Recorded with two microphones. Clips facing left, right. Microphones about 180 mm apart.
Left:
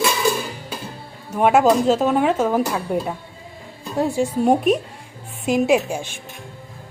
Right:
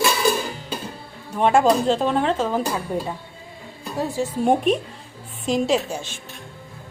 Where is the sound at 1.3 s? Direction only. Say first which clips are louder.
Left 2 dB; 10° left (ahead or behind).